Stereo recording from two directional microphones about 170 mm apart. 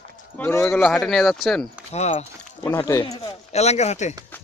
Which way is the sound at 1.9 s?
40° left (ahead or behind).